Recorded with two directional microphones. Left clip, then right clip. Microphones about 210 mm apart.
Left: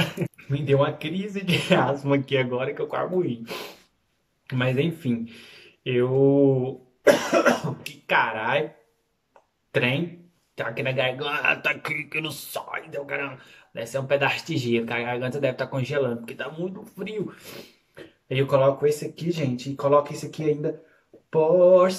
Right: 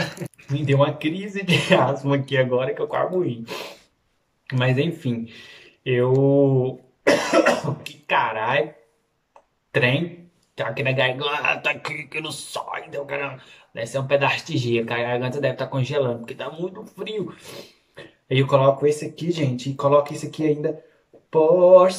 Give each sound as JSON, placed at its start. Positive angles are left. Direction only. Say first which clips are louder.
{"t": 0.5, "sound": "speech", "louder": "right 2 dB", "side_deg": 0}
{"t": 7.8, "sound": "speech", "louder": "even", "side_deg": 0}
{"t": 9.7, "sound": "speech", "louder": "right 3 dB", "side_deg": 0}